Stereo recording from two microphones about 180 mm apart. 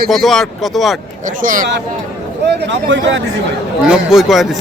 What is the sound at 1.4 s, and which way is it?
Speech, 50° right (ahead or behind).